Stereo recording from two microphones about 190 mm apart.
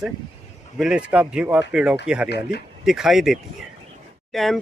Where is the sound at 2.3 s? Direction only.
60° left (ahead or behind).